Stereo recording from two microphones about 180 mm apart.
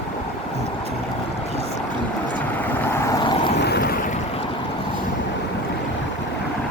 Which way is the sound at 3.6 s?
65° left (ahead or behind).